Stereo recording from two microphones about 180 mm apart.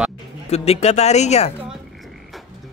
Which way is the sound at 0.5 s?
35° left (ahead or behind).